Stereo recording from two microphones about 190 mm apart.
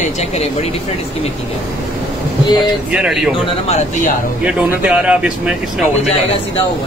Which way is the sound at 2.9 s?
5° right (ahead or behind).